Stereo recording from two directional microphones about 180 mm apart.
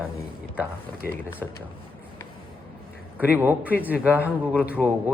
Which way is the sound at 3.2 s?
10° right (ahead or behind).